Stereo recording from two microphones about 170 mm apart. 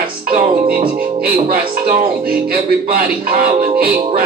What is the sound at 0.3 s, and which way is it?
Music, 55° right (ahead or behind).